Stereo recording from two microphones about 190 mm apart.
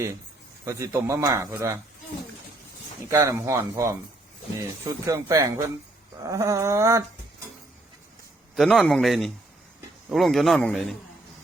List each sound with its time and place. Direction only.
0.6 s speech: 15° right (ahead or behind)
3.1 s speech: 15° right (ahead or behind)
5.0 s speech: 15° right (ahead or behind)
8.5 s a man's voice: centre (ahead or behind)